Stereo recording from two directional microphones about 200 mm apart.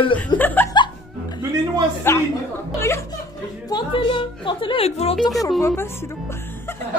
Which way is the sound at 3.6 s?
25° left (ahead or behind).